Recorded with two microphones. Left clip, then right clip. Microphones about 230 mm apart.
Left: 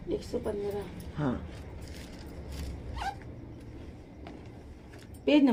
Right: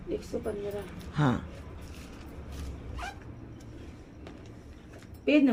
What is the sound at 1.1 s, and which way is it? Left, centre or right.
Speech, right.